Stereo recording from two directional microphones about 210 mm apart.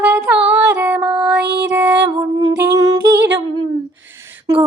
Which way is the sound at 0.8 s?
10° right (ahead or behind).